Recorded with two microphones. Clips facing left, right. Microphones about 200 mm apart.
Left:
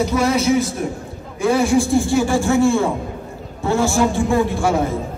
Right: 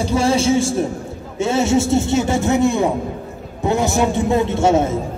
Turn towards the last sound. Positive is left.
turn(degrees=-25)  # may be behind; listen again after turning